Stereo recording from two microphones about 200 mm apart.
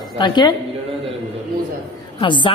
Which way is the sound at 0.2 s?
20° left (ahead or behind).